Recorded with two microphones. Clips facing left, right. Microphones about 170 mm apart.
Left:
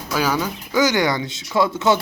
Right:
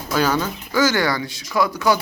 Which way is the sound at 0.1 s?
10° left (ahead or behind).